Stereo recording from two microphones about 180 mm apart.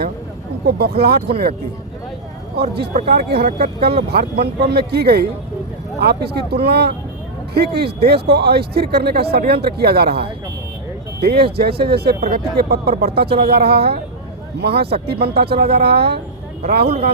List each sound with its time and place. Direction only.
0.8 s speech: 60° right (ahead or behind)
2.6 s speech: 65° right (ahead or behind)